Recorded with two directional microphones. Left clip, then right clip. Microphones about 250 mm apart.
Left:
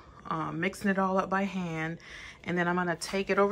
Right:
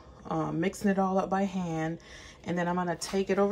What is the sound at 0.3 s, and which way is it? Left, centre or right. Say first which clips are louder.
Speech: right 1 dB; centre.